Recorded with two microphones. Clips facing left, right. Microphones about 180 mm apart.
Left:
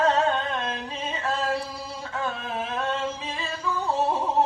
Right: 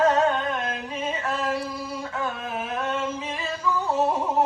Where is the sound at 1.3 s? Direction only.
30° left (ahead or behind).